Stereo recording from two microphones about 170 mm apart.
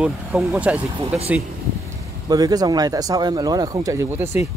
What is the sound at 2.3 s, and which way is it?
Speech, 20° right (ahead or behind).